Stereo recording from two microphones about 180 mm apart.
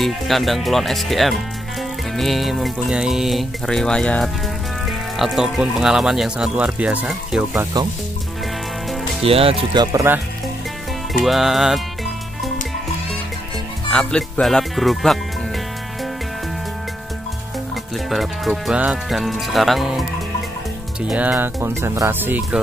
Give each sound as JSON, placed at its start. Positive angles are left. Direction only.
{"t": 0.0, "sound": "speech", "side_deg": 0}
{"t": 9.2, "sound": "speech", "side_deg": -30}
{"t": 9.9, "sound": "speech", "side_deg": -10}
{"t": 11.1, "sound": "speech", "side_deg": 0}
{"t": 13.8, "sound": "speech", "side_deg": 5}
{"t": 17.9, "sound": "speech", "side_deg": 0}